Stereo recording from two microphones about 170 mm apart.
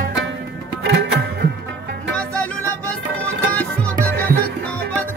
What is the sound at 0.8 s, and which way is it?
Music, 75° right (ahead or behind).